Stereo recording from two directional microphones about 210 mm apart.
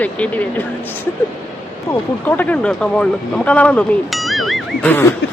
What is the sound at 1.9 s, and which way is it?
Speech, 10° left (ahead or behind).